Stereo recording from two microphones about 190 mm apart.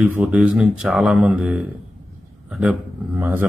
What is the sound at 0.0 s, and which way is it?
Speech, 10° right (ahead or behind).